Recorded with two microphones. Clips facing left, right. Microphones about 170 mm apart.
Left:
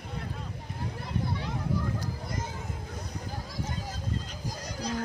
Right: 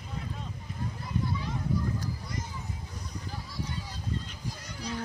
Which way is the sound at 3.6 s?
45° left (ahead or behind).